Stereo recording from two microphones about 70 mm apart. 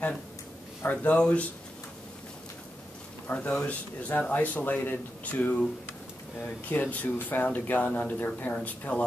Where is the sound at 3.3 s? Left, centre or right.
Centre.